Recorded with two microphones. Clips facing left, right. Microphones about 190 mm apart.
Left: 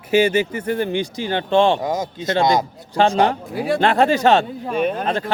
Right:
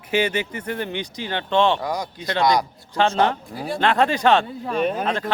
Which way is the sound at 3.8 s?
40° left (ahead or behind).